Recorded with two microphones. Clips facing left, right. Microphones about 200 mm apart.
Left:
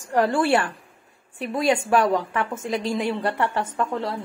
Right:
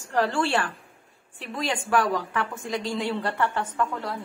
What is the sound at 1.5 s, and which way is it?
A woman's voice, 25° left (ahead or behind).